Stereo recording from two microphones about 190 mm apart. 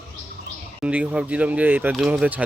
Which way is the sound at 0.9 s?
5° right (ahead or behind).